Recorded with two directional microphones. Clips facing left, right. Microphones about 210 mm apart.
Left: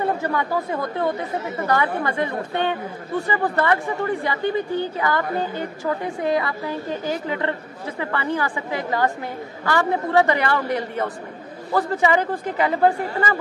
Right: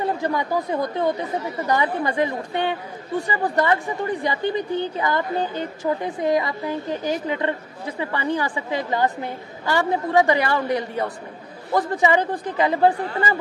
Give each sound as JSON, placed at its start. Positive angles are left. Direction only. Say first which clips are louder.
{"t": 0.2, "sound": "a woman's voice", "louder": "even", "side_deg": -15}